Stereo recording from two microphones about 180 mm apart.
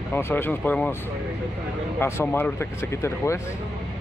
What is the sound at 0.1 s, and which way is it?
Speech, 10° left (ahead or behind).